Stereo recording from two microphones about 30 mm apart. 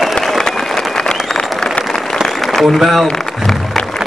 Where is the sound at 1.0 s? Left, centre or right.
Left.